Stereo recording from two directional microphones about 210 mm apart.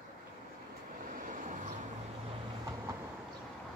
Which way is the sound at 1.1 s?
40° right (ahead or behind).